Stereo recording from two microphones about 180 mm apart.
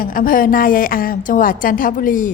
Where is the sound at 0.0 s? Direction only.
50° left (ahead or behind).